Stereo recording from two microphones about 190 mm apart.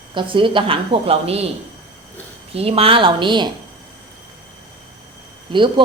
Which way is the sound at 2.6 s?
30° right (ahead or behind).